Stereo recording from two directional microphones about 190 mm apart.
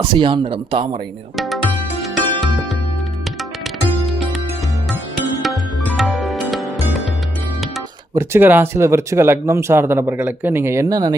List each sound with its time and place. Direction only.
0.0 s speech: 25° right (ahead or behind)
1.4 s music: centre (ahead or behind)
6.0 s music: centre (ahead or behind)
8.1 s speech: 10° right (ahead or behind)